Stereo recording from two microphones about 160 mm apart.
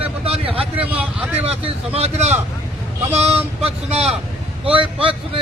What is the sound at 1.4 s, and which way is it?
A man's voice, 40° right (ahead or behind).